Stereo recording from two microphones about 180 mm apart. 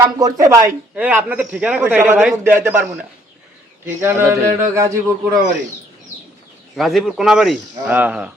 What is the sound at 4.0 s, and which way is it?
A man's voice, 15° right (ahead or behind).